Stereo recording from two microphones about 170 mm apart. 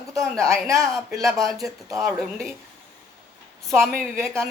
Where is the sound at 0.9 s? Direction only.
Centre (ahead or behind).